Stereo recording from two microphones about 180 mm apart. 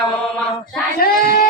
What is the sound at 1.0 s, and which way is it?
Child singing, 55° left (ahead or behind).